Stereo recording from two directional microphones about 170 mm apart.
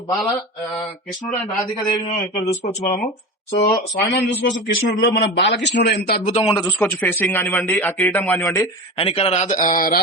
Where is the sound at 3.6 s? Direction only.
20° left (ahead or behind).